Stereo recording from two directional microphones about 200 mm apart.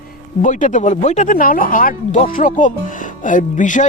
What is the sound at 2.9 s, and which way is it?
Music, 40° left (ahead or behind).